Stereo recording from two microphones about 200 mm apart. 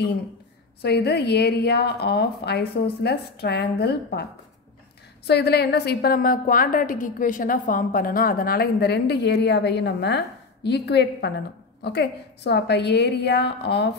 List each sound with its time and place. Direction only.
0.8 s a woman's voice: 55° left (ahead or behind)